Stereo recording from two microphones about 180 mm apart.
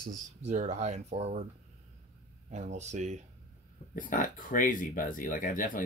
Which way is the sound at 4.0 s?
45° left (ahead or behind).